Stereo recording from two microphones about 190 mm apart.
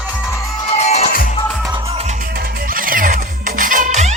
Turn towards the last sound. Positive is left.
turn(degrees=-40)  # may be behind; listen again after turning